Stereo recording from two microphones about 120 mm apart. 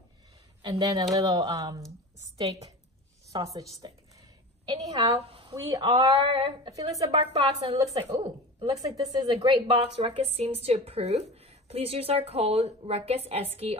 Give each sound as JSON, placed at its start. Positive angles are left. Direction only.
{"t": 0.6, "sound": "a woman's voice", "side_deg": -40}
{"t": 6.3, "sound": "a woman's voice", "side_deg": -50}
{"t": 6.7, "sound": "speech", "side_deg": -30}
{"t": 7.2, "sound": "a woman's voice", "side_deg": -50}
{"t": 8.9, "sound": "speech", "side_deg": -35}
{"t": 10.0, "sound": "a woman's voice", "side_deg": -55}